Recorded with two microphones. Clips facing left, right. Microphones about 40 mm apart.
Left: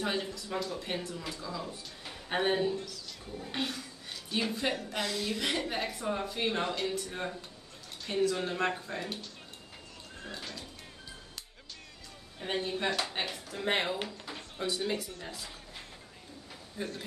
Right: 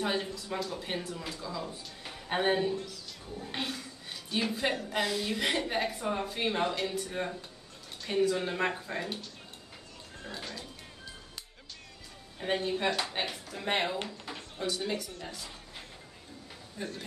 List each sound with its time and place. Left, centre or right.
0.0 s speech: centre
12.4 s a man's voice: centre